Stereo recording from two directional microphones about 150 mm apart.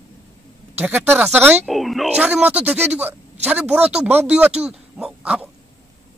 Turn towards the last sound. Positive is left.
turn(degrees=-5)  # may be behind; listen again after turning